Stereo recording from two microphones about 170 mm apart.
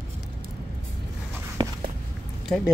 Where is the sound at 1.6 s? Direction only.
25° right (ahead or behind).